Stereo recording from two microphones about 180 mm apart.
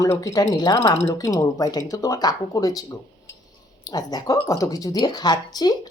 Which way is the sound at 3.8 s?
20° left (ahead or behind).